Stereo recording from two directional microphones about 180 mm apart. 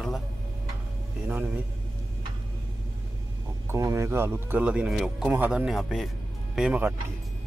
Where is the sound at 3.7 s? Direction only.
15° right (ahead or behind).